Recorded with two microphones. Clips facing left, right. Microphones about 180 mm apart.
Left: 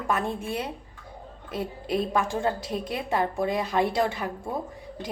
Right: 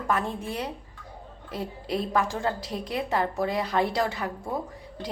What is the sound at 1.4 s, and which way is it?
A woman's voice, 20° left (ahead or behind).